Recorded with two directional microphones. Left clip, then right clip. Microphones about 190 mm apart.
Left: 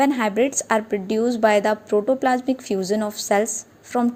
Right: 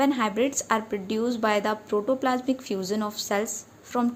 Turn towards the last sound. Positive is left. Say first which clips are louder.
# left 5 dB
turn(degrees=25)  # may be behind; listen again after turning